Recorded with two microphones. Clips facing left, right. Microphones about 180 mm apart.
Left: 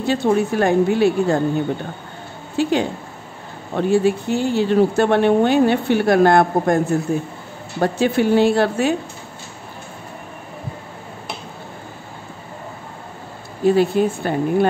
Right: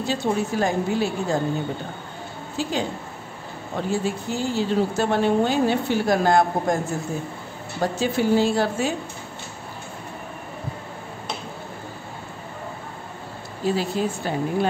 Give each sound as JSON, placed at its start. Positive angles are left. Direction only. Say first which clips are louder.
{"t": 0.0, "sound": "speech", "louder": "left 6 dB", "side_deg": 60}
{"t": 2.5, "sound": "a woman's voice", "louder": "left 7 dB", "side_deg": 65}
{"t": 13.7, "sound": "speech", "louder": "left 8 dB", "side_deg": 55}